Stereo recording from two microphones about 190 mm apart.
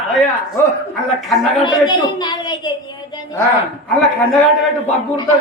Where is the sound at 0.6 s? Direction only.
10° left (ahead or behind).